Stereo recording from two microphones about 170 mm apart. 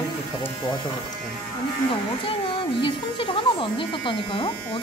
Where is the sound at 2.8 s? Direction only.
30° left (ahead or behind).